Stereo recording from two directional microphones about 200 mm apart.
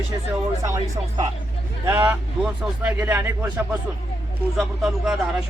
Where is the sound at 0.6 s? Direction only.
15° right (ahead or behind); by 5.2 s centre (ahead or behind).